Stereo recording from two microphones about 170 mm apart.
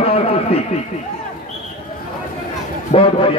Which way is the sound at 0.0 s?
35° left (ahead or behind).